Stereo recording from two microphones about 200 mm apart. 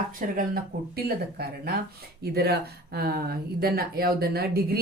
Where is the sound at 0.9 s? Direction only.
50° right (ahead or behind).